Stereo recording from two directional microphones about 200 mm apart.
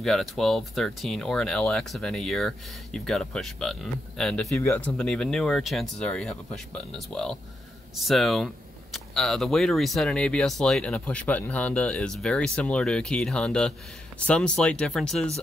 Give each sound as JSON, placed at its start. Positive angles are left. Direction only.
{"t": 0.0, "sound": "speech", "side_deg": 0}